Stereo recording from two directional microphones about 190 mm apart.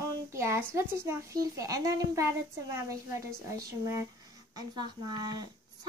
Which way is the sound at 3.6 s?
15° right (ahead or behind).